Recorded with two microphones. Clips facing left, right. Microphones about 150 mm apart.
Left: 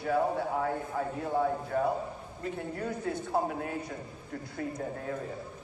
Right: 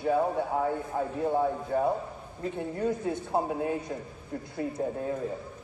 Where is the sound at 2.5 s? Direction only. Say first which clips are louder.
Right 7 dB; 20° right (ahead or behind).